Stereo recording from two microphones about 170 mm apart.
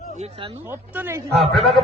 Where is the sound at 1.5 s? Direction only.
Centre (ahead or behind).